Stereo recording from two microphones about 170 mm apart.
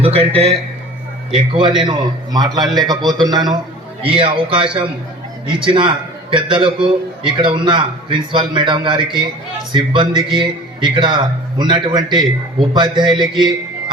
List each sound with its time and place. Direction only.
0.0 s a man's voice: 35° right (ahead or behind)
1.5 s a man's voice: 30° right (ahead or behind)